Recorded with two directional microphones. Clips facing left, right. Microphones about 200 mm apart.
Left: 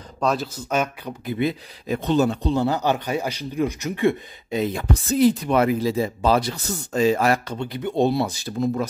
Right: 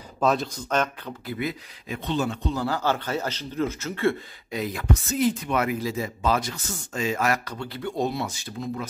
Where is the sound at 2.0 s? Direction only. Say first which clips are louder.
Left 7 dB; 40° left (ahead or behind).